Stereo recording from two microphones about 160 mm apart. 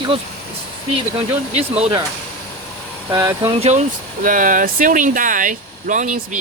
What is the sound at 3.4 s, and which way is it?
Speech, 35° right (ahead or behind).